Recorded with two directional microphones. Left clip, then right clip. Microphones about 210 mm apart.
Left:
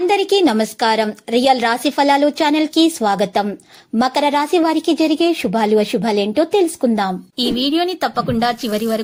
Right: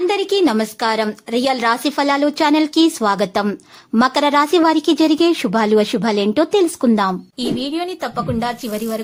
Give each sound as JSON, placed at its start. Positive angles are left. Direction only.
{"t": 0.1, "sound": "a woman's voice", "side_deg": 5}
{"t": 7.6, "sound": "a woman's voice", "side_deg": 20}